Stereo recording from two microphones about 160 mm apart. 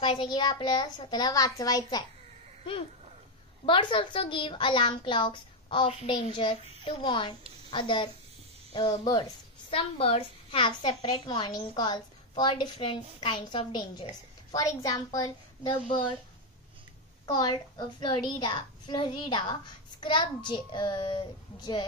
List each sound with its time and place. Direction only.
0.0 s a child's voice: 30° left (ahead or behind)
3.6 s a woman's voice: 30° left (ahead or behind)
9.7 s a child's voice: 35° left (ahead or behind)
17.3 s a child's voice: 25° left (ahead or behind)